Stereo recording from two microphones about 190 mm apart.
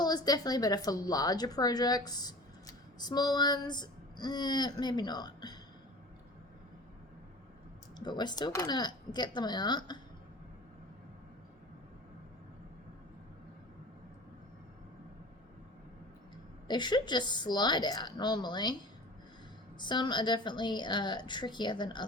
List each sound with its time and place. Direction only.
0.0 s a woman's voice: 20° left (ahead or behind)
7.9 s a woman's voice: 20° left (ahead or behind)
16.6 s a woman's voice: 25° left (ahead or behind)
19.8 s a woman's voice: 25° left (ahead or behind)